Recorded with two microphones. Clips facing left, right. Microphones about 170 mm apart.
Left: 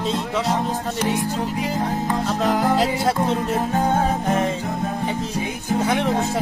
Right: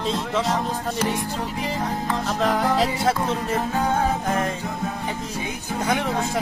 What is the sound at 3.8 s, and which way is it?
Music, 25° left (ahead or behind).